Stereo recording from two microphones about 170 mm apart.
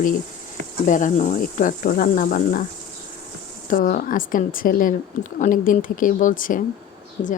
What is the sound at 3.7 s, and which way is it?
A woman's voice, 55° left (ahead or behind).